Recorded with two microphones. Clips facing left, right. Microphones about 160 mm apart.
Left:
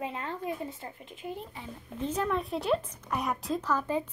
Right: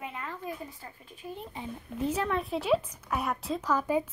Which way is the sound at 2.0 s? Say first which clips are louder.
Right 1 dB; 5° right (ahead or behind).